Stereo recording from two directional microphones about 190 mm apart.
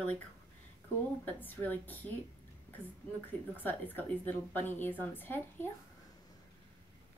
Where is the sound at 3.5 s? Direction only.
10° left (ahead or behind).